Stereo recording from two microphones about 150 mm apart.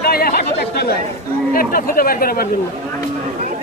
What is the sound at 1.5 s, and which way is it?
Speech, 75° left (ahead or behind).